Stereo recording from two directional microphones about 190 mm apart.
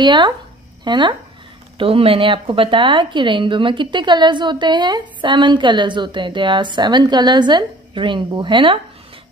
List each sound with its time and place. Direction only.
0.0 s a woman's voice: 25° right (ahead or behind)